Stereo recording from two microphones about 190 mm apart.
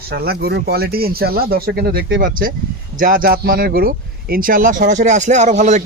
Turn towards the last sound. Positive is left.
turn(degrees=-40)  # may be behind; listen again after turning